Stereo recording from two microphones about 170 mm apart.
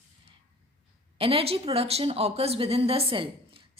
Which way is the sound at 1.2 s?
35° right (ahead or behind).